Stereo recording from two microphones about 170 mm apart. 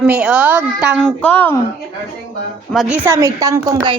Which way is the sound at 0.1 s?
5° right (ahead or behind).